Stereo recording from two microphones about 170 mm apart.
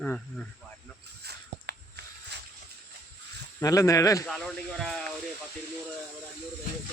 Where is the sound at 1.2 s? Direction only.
75° right (ahead or behind).